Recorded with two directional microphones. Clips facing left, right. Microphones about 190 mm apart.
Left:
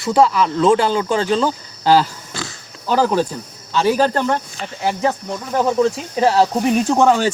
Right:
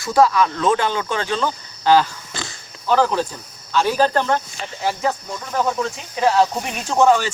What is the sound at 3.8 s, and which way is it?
Speech, 5° left (ahead or behind).